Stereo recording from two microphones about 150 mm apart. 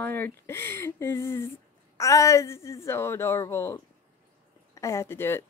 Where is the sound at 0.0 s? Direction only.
15° left (ahead or behind).